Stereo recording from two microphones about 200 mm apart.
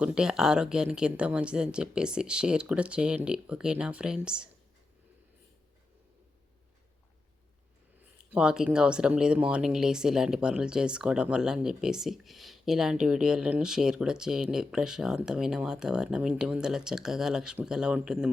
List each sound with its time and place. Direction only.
0.0 s speech: 5° right (ahead or behind)
8.3 s speech: 5° right (ahead or behind)